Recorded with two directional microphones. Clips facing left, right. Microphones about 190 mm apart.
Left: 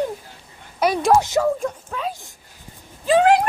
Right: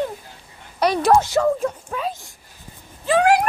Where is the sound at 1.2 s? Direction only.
15° left (ahead or behind).